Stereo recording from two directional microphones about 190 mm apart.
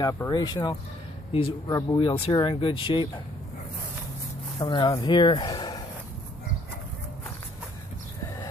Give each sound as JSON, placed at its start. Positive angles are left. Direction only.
{"t": 0.0, "sound": "speech", "side_deg": 20}
{"t": 4.6, "sound": "speech", "side_deg": 25}